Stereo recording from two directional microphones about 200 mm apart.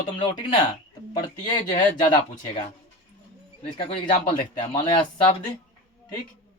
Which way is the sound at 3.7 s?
25° left (ahead or behind).